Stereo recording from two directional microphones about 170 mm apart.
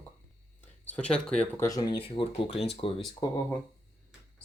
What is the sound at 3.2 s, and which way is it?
Speech, 25° left (ahead or behind).